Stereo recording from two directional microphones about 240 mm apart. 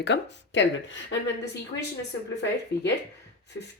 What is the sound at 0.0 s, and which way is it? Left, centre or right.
Speech, left.